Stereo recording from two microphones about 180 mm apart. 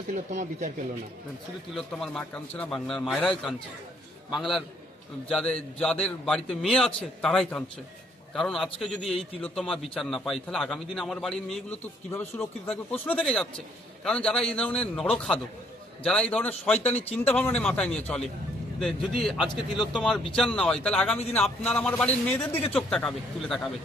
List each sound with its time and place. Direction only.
0.1 s speech: 45° right (ahead or behind)
1.7 s a man's voice: 5° left (ahead or behind)